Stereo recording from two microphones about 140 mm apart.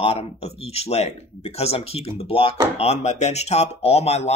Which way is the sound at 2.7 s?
50° left (ahead or behind).